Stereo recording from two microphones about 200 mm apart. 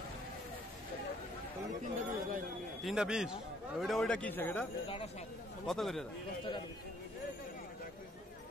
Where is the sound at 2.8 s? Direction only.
Centre (ahead or behind).